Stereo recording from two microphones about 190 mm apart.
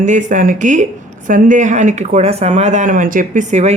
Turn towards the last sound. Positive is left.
turn(degrees=-40)  # may be behind; listen again after turning